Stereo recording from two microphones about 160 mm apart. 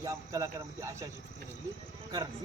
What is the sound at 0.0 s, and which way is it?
Speech, 20° right (ahead or behind).